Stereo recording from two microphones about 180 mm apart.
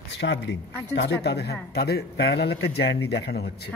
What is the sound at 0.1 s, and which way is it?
A man's voice, 80° left.